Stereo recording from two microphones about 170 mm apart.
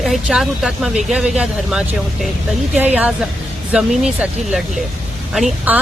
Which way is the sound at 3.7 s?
5° right (ahead or behind).